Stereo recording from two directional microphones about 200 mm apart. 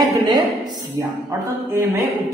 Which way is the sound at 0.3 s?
20° right (ahead or behind).